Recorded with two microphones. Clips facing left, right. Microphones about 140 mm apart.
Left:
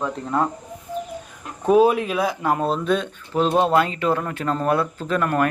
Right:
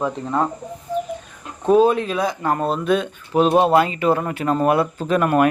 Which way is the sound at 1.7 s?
10° left (ahead or behind).